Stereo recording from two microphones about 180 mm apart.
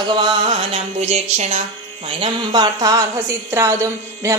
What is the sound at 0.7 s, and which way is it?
Music, 35° right (ahead or behind).